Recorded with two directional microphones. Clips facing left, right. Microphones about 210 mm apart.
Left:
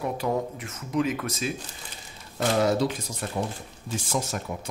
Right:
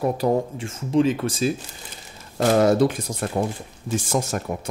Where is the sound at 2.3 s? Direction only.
50° right (ahead or behind).